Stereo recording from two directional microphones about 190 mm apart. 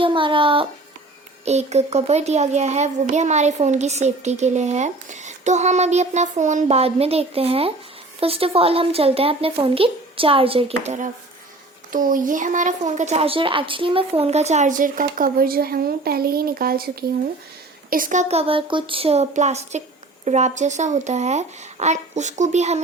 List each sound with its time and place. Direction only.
0.0 s a child's voice: 25° right (ahead or behind)